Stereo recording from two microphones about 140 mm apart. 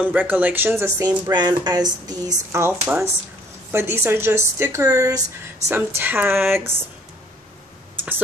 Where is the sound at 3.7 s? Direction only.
15° right (ahead or behind).